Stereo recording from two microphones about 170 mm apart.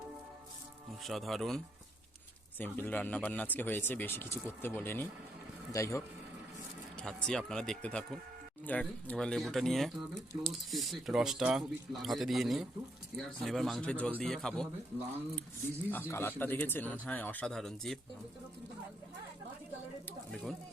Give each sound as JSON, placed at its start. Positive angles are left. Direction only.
{"t": 1.0, "sound": "speech", "side_deg": 0}
{"t": 7.0, "sound": "speech", "side_deg": 5}
{"t": 15.9, "sound": "speech", "side_deg": 10}
{"t": 20.3, "sound": "speech", "side_deg": 0}